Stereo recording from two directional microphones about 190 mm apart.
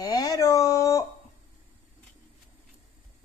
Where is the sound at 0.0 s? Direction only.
20° left (ahead or behind).